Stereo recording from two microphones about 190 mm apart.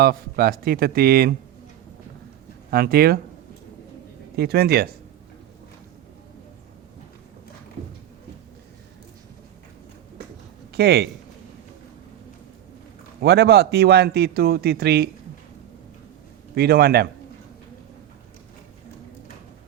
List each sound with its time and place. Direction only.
0.0 s a man's voice: 50° right (ahead or behind)
2.6 s a man's voice: 50° right (ahead or behind)
4.4 s a man's voice: 55° right (ahead or behind)
10.7 s speech: 60° right (ahead or behind)
13.2 s a man's voice: 60° right (ahead or behind)
16.6 s a man's voice: 55° right (ahead or behind)